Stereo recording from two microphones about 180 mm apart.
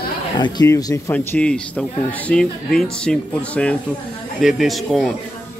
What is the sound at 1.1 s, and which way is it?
Speech, 5° left (ahead or behind).